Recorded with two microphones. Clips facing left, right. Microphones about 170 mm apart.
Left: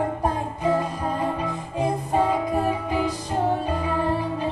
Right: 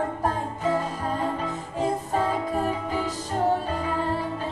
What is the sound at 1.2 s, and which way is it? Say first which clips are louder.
Music: left 2 dB; 15° left (ahead or behind).